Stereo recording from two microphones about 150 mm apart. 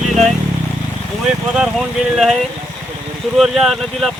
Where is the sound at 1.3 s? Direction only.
5° right (ahead or behind).